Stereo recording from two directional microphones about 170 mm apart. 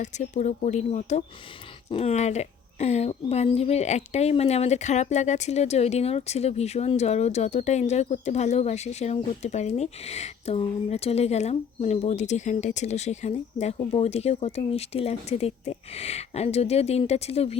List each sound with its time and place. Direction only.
0.0 s speech: 45° left (ahead or behind)